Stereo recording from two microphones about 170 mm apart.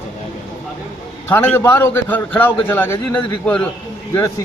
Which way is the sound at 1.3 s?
10° left (ahead or behind).